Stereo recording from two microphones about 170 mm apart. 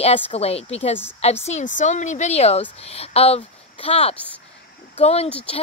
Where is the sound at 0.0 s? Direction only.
35° left (ahead or behind).